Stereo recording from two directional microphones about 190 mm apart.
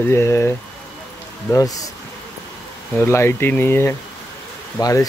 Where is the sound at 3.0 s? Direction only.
10° left (ahead or behind).